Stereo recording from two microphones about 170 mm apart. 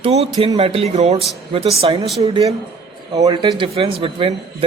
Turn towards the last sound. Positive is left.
turn(degrees=-30)  # may be behind; listen again after turning